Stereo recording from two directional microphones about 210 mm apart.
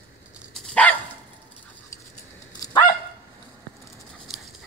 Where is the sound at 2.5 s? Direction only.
20° left (ahead or behind).